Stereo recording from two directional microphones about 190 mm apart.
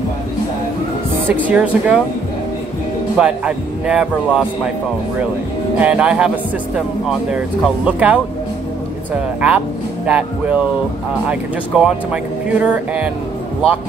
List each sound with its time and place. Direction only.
1.3 s speech: 5° right (ahead or behind)
3.2 s a man's voice: 5° right (ahead or behind)
5.8 s a man's voice: 5° right (ahead or behind)